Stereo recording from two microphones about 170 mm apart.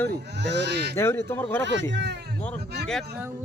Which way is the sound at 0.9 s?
15° left (ahead or behind).